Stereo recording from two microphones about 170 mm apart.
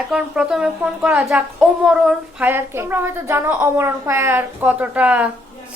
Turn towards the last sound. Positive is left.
turn(degrees=-10)  # may be behind; listen again after turning